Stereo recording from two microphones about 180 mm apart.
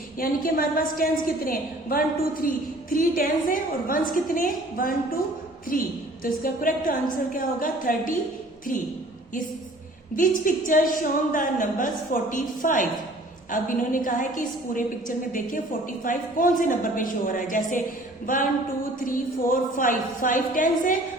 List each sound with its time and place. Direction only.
0.2 s a woman's voice: 50° left (ahead or behind)
6.2 s a woman's voice: 50° left (ahead or behind)
10.2 s a woman's voice: 50° left (ahead or behind)
19.0 s a woman's voice: 50° left (ahead or behind)